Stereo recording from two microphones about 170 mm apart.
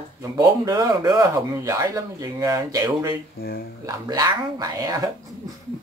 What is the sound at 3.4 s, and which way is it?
Speech, 65° left (ahead or behind).